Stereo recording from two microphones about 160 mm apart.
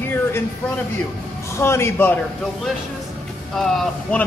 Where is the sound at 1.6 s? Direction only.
15° left (ahead or behind).